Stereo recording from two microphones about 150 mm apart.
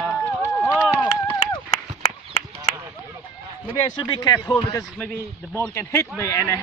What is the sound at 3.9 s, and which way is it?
Speech, 25° left (ahead or behind).